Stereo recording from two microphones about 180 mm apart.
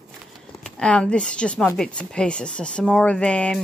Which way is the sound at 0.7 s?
5° left (ahead or behind).